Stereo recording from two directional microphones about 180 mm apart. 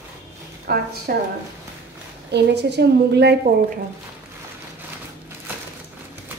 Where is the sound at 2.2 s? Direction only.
70° right (ahead or behind).